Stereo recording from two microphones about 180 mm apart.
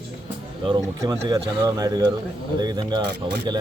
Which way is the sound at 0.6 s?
30° right (ahead or behind).